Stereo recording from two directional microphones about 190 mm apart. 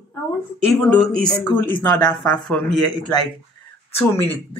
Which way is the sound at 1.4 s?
20° left (ahead or behind).